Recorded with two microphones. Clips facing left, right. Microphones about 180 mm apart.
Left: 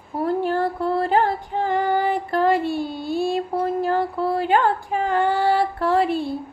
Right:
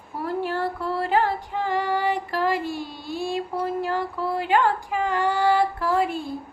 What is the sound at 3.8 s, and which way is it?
Female singing, 35° left (ahead or behind).